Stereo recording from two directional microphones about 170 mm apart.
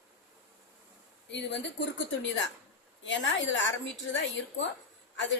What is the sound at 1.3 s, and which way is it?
Speech, 90° left.